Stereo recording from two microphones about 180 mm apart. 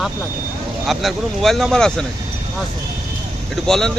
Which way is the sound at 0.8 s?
Centre (ahead or behind).